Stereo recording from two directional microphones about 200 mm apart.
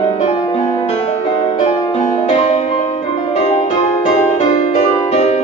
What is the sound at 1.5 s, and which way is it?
Music, 35° left (ahead or behind).